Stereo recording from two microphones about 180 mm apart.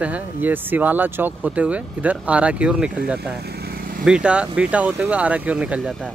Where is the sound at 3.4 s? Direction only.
60° right (ahead or behind).